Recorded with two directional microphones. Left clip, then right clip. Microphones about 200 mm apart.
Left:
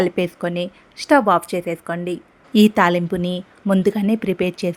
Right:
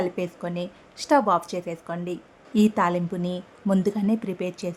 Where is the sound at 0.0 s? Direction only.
20° left (ahead or behind).